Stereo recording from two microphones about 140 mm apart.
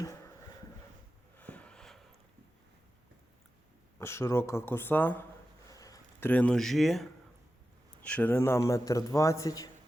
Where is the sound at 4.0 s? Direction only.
20° left (ahead or behind).